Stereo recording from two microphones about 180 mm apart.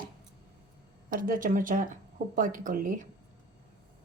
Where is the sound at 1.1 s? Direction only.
50° right (ahead or behind).